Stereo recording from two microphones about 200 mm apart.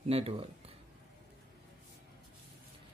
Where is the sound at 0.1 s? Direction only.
30° right (ahead or behind).